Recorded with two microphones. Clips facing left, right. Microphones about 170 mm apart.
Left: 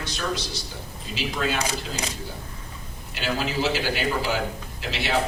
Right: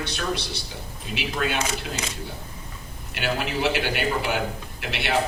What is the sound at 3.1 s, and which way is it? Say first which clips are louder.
A man's voice: even; 60° right (ahead or behind).